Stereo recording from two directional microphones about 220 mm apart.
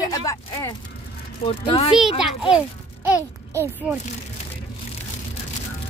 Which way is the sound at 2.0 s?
Centre (ahead or behind).